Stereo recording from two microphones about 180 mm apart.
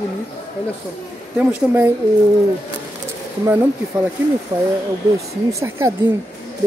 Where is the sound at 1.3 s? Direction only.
10° right (ahead or behind).